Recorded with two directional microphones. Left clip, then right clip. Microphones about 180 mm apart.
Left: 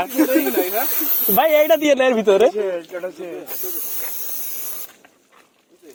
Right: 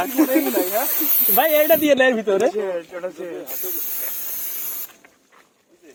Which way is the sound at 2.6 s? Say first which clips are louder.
Left 2 dB; 15° right (ahead or behind).